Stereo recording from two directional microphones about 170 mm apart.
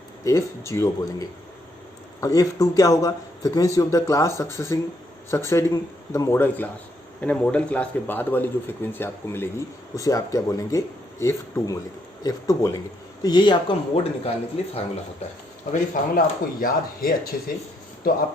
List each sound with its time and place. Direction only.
0.3 s a man's voice: 15° left (ahead or behind); by 14.8 s 35° left (ahead or behind)
15.7 s speech: 55° left (ahead or behind)